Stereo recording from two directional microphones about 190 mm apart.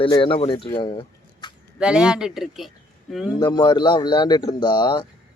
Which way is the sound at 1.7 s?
5° right (ahead or behind).